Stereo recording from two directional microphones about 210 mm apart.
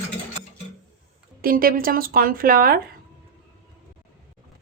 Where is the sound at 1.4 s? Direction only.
45° right (ahead or behind).